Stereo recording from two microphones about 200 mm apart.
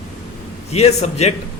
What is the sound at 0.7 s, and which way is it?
Speech, 30° left (ahead or behind).